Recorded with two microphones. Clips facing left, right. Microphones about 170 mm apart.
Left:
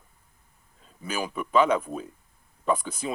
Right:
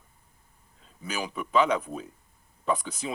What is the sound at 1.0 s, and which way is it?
Speech, 50° left (ahead or behind).